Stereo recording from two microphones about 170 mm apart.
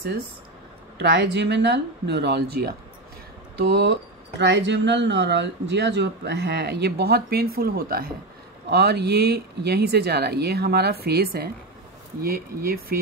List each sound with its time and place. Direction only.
0.9 s speech: 90° right; by 8.1 s 60° right (ahead or behind)
8.6 s speech: 75° right (ahead or behind)